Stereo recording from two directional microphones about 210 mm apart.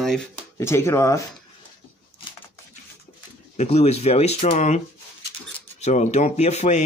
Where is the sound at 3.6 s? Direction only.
30° left (ahead or behind).